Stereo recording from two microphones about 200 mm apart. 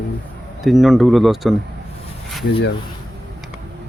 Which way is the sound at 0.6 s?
Centre (ahead or behind).